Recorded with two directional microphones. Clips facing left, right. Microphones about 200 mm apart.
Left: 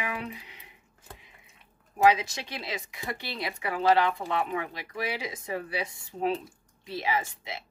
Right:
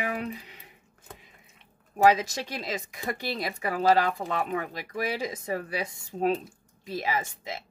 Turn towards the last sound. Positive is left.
turn(degrees=-45)  # may be behind; listen again after turning